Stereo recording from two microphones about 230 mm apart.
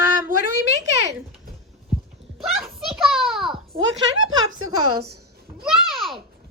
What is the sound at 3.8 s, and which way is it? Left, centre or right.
Speech, right.